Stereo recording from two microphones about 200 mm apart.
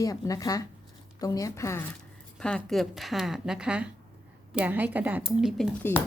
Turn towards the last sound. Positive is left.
turn(degrees=10)  # may be behind; listen again after turning